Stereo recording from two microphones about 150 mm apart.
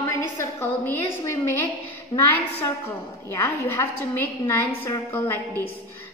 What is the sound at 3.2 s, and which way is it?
A woman's voice, 15° left (ahead or behind).